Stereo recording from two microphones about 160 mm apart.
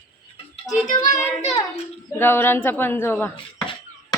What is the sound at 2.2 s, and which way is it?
A woman's voice, 15° left (ahead or behind).